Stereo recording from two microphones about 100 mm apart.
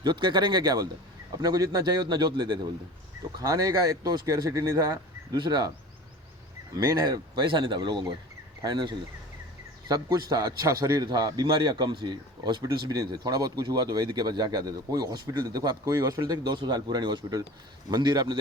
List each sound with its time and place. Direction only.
0.0 s speech: 50° right (ahead or behind)
3.3 s speech: 35° right (ahead or behind)
6.8 s speech: 40° right (ahead or behind)